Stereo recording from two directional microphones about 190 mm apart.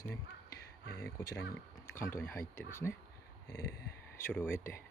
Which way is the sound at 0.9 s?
15° left (ahead or behind).